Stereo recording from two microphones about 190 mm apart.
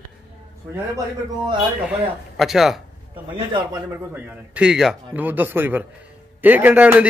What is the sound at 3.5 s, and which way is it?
Speech, 20° right (ahead or behind).